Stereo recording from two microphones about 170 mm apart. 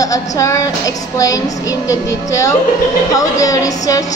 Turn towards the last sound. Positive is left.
turn(degrees=20)  # may be behind; listen again after turning